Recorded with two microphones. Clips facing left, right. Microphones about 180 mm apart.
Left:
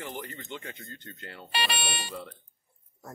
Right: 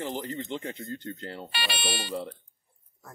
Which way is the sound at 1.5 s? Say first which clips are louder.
Left 7 dB; 40° left (ahead or behind).